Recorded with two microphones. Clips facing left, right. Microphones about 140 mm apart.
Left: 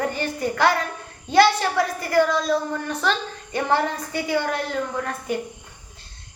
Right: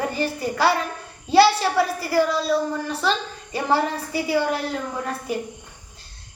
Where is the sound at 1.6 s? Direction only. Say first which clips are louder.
Right 1 dB; 30° right (ahead or behind).